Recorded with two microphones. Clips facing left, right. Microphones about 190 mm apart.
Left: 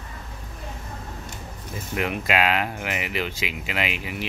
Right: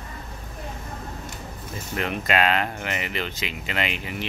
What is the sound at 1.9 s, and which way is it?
Speech, 5° left (ahead or behind).